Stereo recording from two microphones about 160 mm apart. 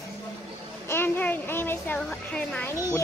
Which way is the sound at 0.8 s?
15° left (ahead or behind).